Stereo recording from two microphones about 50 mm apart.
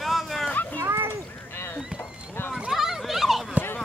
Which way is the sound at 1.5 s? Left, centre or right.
Left.